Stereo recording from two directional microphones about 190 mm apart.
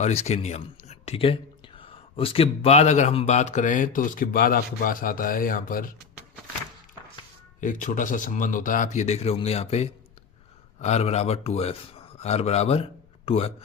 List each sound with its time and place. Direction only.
0.0 s speech: 35° left (ahead or behind)
7.6 s a man's voice: 40° left (ahead or behind)